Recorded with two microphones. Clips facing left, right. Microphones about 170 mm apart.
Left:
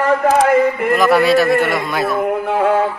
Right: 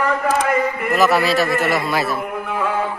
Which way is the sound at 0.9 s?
Centre (ahead or behind).